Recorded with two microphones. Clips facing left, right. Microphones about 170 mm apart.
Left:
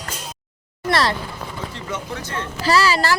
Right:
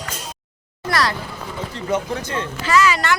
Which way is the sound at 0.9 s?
25° left (ahead or behind).